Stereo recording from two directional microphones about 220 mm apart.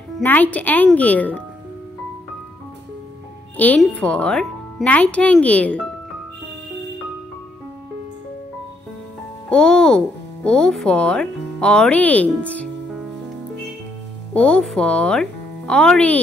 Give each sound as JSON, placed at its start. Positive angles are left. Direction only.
{"t": 0.1, "sound": "speech", "side_deg": 10}
{"t": 3.5, "sound": "speech", "side_deg": 5}
{"t": 9.5, "sound": "speech", "side_deg": 5}
{"t": 14.3, "sound": "speech", "side_deg": 5}